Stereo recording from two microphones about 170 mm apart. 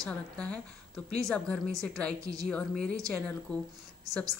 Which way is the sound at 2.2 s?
20° right (ahead or behind).